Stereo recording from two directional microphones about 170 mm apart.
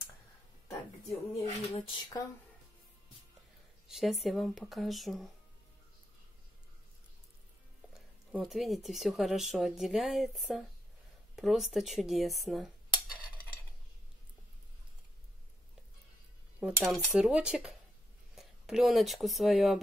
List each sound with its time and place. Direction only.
1.4 s a sound: 35° left (ahead or behind)
3.9 s speech: centre (ahead or behind)
7.9 s speech: centre (ahead or behind)
11.3 s cutlery: centre (ahead or behind)
16.5 s cutlery: 10° right (ahead or behind)
16.8 s speech: 5° right (ahead or behind)